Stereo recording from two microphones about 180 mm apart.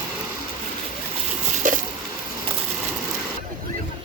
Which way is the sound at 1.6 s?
45° right (ahead or behind).